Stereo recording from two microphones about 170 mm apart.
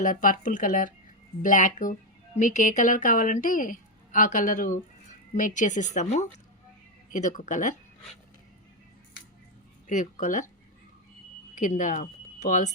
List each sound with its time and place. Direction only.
0.0 s a woman's voice: 50° left (ahead or behind)
9.8 s speech: 45° left (ahead or behind)
11.5 s speech: 50° left (ahead or behind)